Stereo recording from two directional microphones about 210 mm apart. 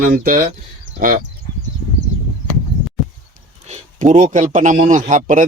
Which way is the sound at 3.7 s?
35° right (ahead or behind).